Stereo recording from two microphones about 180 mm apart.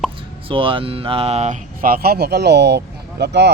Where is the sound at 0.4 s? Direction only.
30° right (ahead or behind).